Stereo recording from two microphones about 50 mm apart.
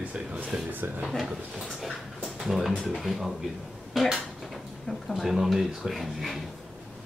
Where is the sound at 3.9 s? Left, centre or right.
Centre.